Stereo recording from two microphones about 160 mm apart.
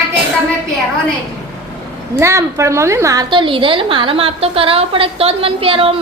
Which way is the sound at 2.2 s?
20° right (ahead or behind).